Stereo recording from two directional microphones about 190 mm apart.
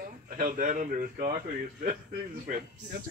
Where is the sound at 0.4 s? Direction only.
45° right (ahead or behind).